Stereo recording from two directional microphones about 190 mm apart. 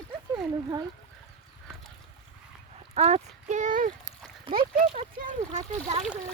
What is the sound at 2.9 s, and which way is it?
Speech, 35° right (ahead or behind).